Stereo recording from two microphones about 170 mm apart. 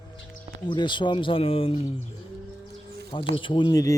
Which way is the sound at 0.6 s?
30° left (ahead or behind).